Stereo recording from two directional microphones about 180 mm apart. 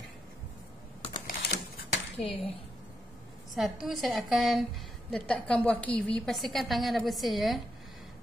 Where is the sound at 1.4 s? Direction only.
70° left (ahead or behind).